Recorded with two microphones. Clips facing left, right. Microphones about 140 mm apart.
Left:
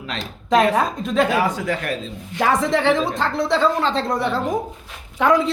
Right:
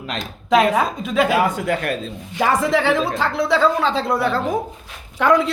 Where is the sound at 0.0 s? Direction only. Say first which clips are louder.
Right 2 dB; 45° right (ahead or behind).